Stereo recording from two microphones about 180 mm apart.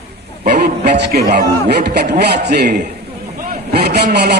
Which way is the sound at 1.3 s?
60° right (ahead or behind).